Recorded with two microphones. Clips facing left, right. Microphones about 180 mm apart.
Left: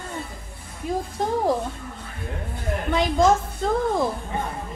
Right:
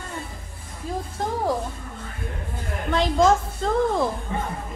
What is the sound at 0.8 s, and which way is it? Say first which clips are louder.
Speech: left 4 dB; 15° left (ahead or behind).